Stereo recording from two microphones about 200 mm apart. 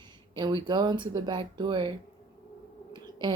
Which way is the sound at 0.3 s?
20° right (ahead or behind).